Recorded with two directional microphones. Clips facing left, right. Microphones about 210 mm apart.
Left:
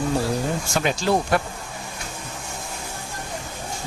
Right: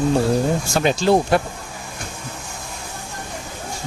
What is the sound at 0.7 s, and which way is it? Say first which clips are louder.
Speech: right 5 dB; 30° right (ahead or behind).